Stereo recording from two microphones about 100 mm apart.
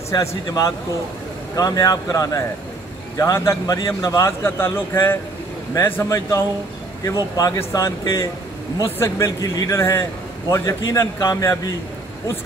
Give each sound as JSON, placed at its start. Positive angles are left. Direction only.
{"t": 0.1, "sound": "a man's voice", "side_deg": 35}